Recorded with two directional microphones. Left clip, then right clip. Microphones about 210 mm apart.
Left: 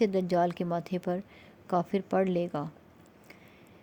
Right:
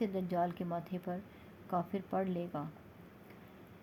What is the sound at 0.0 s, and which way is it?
Speech, 55° left (ahead or behind).